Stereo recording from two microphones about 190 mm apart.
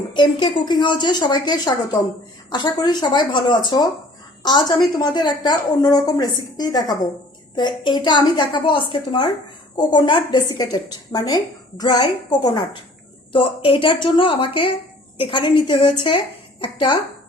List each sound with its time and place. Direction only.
0.1 s a woman's voice: 25° left (ahead or behind)